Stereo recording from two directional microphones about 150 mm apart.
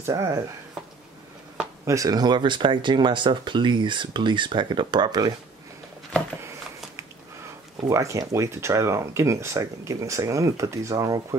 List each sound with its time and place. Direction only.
0.0 s speech: 20° right (ahead or behind)
1.9 s speech: 20° right (ahead or behind)
7.9 s speech: 20° right (ahead or behind)